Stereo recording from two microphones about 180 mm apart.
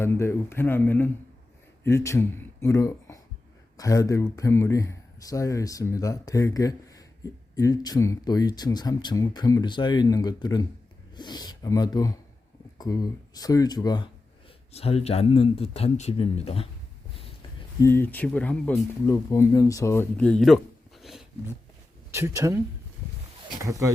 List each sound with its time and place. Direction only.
0.0 s speech: 15° left (ahead or behind)
14.7 s speech: 35° left (ahead or behind)
17.7 s speech: 15° left (ahead or behind)
22.1 s speech: 15° right (ahead or behind)